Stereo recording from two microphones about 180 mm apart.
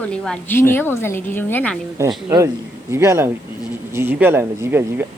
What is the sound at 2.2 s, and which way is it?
Speech, 15° right (ahead or behind).